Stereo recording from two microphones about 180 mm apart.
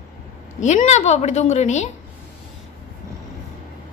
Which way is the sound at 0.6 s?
40° left (ahead or behind).